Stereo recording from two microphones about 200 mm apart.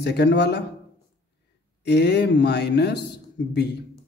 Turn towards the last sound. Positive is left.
turn(degrees=60)  # may be behind; listen again after turning